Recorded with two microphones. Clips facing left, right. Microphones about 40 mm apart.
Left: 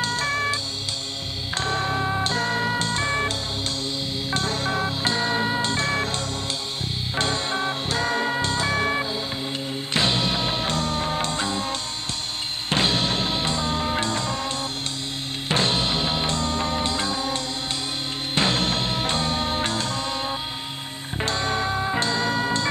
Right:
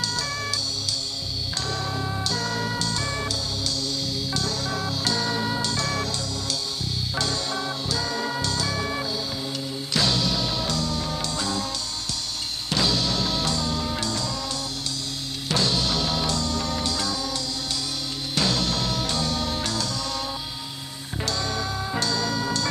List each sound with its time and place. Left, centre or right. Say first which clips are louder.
0.0 s music: left 5 dB; left
1.6 s music: left 6 dB; left
7.2 s music: left 4 dB; left
12.6 s music: left 2 dB; left
15.4 s music: left 2 dB; left